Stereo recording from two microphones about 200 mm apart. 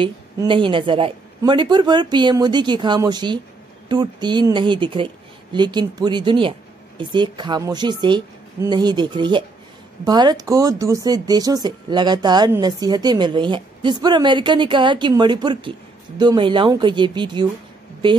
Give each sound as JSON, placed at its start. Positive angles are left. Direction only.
{"t": 0.0, "sound": "speech", "side_deg": -25}